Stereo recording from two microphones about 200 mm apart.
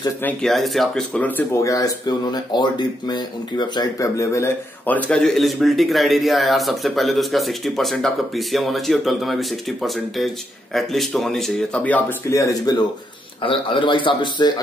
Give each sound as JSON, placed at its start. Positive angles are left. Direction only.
{"t": 0.2, "sound": "a man's voice", "side_deg": 5}